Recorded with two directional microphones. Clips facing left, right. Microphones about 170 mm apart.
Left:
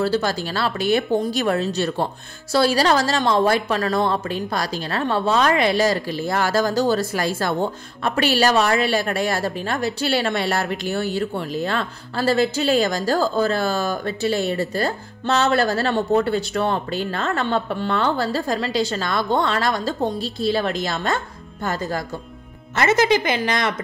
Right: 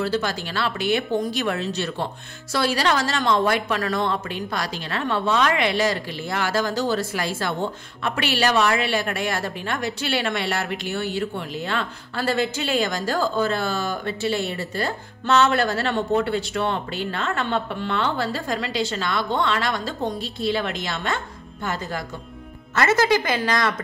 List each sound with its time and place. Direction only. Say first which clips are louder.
0.0 s a woman's voice: left 3 dB; 35° left (ahead or behind)
22.8 s a woman's voice: left 2 dB; 20° left (ahead or behind)